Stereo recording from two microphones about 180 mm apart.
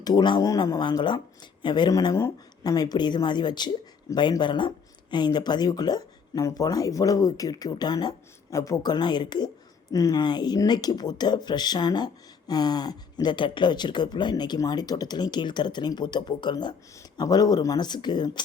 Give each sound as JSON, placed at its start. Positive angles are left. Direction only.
{"t": 0.0, "sound": "speech", "side_deg": 25}